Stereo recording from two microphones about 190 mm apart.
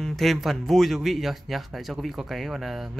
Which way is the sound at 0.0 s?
Centre (ahead or behind).